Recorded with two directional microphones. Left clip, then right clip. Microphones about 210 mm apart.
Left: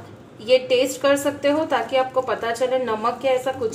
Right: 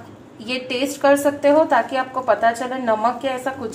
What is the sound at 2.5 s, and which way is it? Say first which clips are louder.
Speech: even; 15° right (ahead or behind).